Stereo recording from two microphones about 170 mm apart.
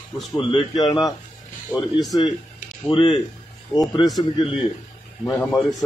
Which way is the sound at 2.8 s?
25° left (ahead or behind).